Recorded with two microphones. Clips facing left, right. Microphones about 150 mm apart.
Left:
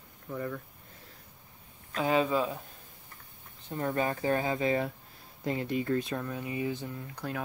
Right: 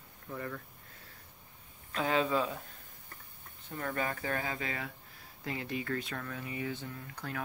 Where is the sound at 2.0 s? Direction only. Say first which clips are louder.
Left 3 dB; 15° left (ahead or behind).